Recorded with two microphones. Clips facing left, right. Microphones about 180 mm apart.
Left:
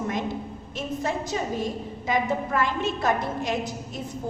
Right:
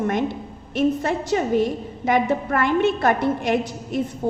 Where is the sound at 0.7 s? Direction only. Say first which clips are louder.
Right 8 dB; 65° right (ahead or behind).